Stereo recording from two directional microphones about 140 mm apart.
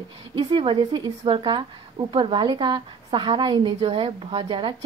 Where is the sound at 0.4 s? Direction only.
35° right (ahead or behind).